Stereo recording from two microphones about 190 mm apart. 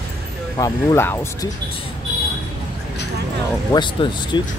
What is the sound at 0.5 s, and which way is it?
Speech, 15° left (ahead or behind).